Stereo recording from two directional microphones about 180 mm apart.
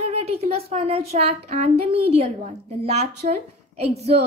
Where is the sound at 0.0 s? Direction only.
35° right (ahead or behind).